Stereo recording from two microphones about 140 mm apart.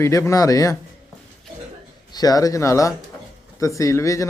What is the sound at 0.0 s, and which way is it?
Speech, 20° left (ahead or behind).